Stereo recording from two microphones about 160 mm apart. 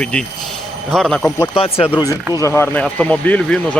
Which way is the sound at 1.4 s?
35° left (ahead or behind).